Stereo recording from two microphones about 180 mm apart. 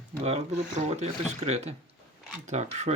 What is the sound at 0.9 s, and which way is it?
Speech, 35° right (ahead or behind).